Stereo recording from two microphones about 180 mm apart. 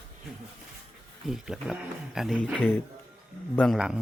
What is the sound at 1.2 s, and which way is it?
Speech, centre (ahead or behind).